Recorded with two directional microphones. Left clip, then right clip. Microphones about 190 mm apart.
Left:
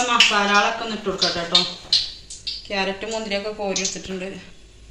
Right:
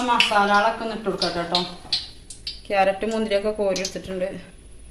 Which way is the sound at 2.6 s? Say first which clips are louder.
Right 6 dB; 65° right (ahead or behind).